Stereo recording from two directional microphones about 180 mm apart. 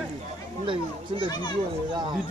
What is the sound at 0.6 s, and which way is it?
Speech, 30° right (ahead or behind).